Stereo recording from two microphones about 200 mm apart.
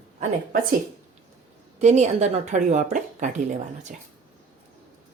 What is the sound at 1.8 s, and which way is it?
A woman's voice, 35° right (ahead or behind).